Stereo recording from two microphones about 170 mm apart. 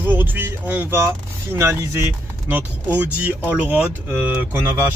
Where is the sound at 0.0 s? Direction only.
10° right (ahead or behind).